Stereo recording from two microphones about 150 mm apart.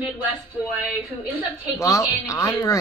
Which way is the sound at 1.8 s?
20° left (ahead or behind).